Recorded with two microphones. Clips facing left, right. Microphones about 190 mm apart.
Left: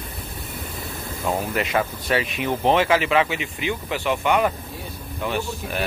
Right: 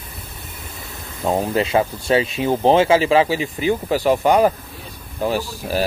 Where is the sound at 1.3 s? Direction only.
30° right (ahead or behind).